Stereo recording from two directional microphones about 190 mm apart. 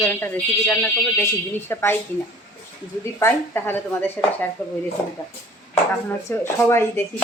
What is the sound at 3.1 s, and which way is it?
Speech, 10° left (ahead or behind).